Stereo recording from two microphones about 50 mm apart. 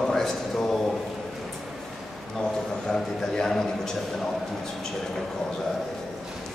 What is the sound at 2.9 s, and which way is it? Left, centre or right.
A man's voice, centre.